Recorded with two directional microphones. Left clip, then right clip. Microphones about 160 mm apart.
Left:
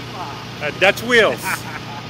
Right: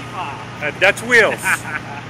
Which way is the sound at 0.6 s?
75° left (ahead or behind).